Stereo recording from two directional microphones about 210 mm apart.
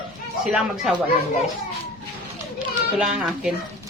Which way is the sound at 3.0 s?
5° right (ahead or behind).